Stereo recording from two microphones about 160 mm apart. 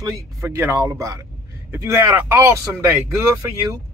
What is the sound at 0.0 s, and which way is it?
Speech, 15° right (ahead or behind).